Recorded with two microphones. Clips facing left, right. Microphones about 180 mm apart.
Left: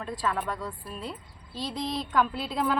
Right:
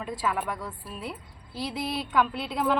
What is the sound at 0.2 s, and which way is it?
Speech, 5° right (ahead or behind).